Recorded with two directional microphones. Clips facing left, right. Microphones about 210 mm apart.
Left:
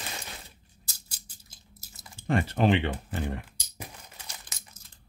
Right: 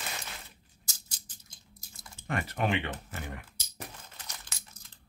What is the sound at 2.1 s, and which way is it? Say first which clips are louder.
Speech: left 7 dB; 30° left (ahead or behind).